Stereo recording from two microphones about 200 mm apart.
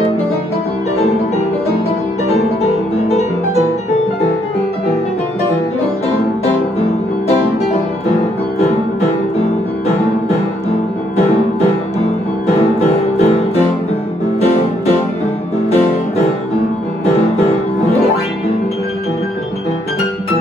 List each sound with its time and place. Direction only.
8.1 s music: 30° left (ahead or behind)
12.4 s music: 30° left (ahead or behind)
17.0 s music: 30° left (ahead or behind)